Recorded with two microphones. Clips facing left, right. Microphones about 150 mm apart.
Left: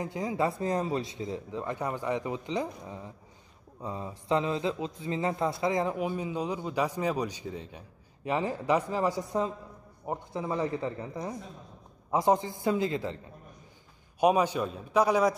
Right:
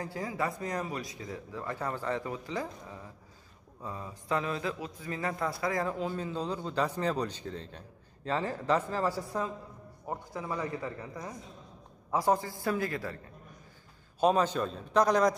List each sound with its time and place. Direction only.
0.0 s a man's voice: 20° left (ahead or behind)
14.2 s a man's voice: 10° left (ahead or behind)